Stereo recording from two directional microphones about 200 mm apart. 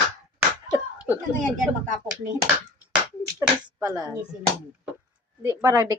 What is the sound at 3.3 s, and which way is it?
Speech, 15° right (ahead or behind).